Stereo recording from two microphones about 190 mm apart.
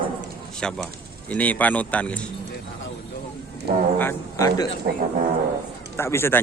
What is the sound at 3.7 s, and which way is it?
Speech, 55° right (ahead or behind).